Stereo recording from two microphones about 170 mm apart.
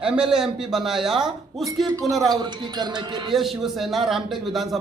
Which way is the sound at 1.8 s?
20° right (ahead or behind).